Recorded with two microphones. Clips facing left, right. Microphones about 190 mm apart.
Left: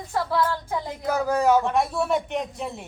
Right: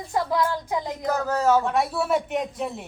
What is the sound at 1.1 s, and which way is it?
Speech, 10° left (ahead or behind).